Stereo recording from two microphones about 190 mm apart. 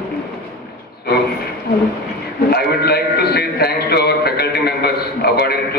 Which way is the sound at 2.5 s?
55° left (ahead or behind).